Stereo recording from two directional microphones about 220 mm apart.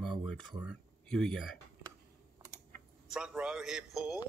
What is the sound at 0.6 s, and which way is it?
Speech, centre (ahead or behind).